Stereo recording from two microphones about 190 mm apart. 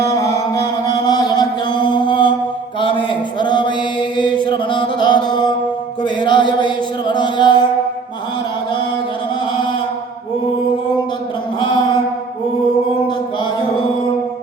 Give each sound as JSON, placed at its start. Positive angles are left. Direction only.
{"t": 0.1, "sound": "music", "side_deg": 15}
{"t": 2.8, "sound": "a sound", "side_deg": 25}
{"t": 4.2, "sound": "chant", "side_deg": 25}
{"t": 6.0, "sound": "music", "side_deg": 25}